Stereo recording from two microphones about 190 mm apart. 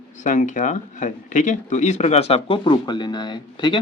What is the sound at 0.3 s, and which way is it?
Speech, 40° left (ahead or behind).